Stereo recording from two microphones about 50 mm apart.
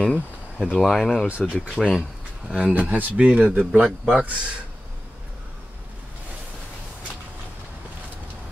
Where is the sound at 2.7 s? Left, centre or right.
Right.